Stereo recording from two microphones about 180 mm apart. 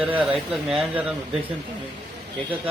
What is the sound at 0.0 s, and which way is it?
A man's voice, 10° right (ahead or behind).